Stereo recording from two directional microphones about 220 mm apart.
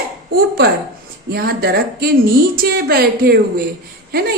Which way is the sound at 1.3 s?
45° right (ahead or behind).